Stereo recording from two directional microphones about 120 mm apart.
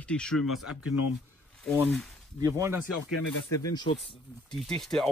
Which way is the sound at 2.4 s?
25° right (ahead or behind).